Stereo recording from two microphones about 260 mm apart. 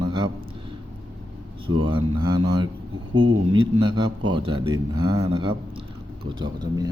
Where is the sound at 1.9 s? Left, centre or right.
Centre.